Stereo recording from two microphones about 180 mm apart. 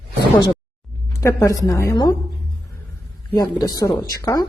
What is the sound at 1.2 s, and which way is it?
Speech, 15° left (ahead or behind).